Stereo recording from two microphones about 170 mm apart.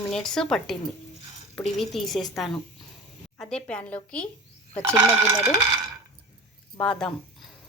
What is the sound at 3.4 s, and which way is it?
Speech, 5° left (ahead or behind).